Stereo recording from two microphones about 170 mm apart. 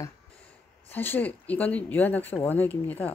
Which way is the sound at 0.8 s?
10° left (ahead or behind).